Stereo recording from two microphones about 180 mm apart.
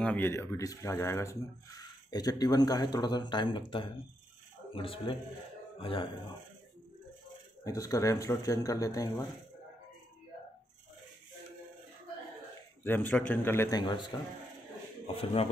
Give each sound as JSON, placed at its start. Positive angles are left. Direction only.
{"t": 0.0, "sound": "speech", "side_deg": 10}
{"t": 4.7, "sound": "speech", "side_deg": 30}
{"t": 7.6, "sound": "speech", "side_deg": 20}
{"t": 12.8, "sound": "speech", "side_deg": 10}